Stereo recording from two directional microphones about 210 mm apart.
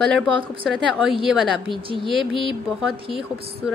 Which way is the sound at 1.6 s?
25° right (ahead or behind).